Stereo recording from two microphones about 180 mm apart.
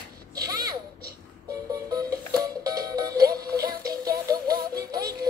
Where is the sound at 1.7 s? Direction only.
20° right (ahead or behind).